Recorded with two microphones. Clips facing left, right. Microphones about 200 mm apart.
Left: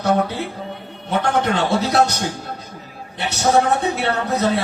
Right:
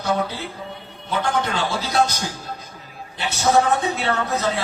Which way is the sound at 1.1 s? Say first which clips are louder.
Left 4 dB; 65° left (ahead or behind).